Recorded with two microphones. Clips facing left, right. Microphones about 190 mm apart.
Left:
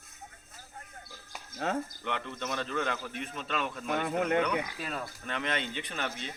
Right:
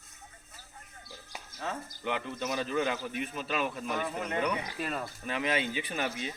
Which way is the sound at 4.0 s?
65° left (ahead or behind).